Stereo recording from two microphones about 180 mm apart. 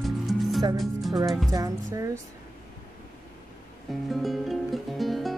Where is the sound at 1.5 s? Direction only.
20° right (ahead or behind).